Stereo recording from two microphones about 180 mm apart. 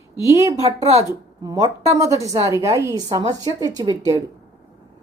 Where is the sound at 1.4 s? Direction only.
20° right (ahead or behind).